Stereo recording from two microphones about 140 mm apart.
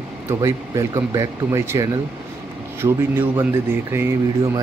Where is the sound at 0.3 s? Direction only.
20° right (ahead or behind).